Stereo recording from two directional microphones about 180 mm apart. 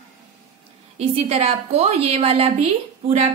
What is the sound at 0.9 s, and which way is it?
A woman's voice, 35° right (ahead or behind).